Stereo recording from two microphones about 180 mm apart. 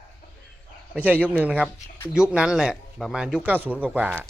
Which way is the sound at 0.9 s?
10° right (ahead or behind).